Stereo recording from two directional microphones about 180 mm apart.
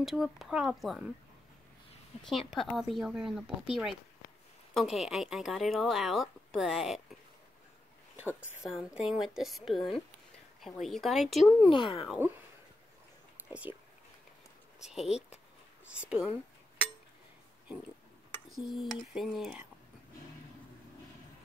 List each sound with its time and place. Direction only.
0.0 s a woman's voice: centre (ahead or behind)
2.2 s a woman's voice: centre (ahead or behind)
8.2 s a woman's voice: 10° right (ahead or behind)
11.7 s speech: 30° left (ahead or behind)
13.5 s speech: 5° right (ahead or behind)
14.9 s speech: 5° right (ahead or behind)
15.9 s chink: 5° right (ahead or behind)
18.5 s a sound: centre (ahead or behind)
19.1 s a woman's voice: centre (ahead or behind)